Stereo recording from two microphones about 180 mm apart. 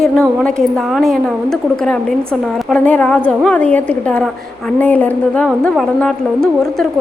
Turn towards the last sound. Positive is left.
turn(degrees=0)  # may be behind; listen again after turning